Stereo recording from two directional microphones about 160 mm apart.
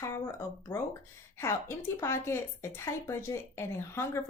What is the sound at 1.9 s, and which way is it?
Speech, 15° left (ahead or behind).